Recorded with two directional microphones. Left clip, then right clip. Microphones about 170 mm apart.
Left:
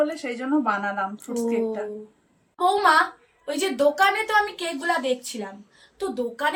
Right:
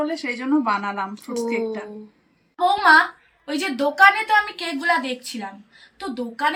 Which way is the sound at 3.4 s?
25° left (ahead or behind).